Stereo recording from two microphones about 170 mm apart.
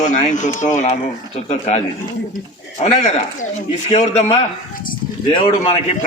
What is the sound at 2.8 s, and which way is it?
A man's voice, 40° left (ahead or behind).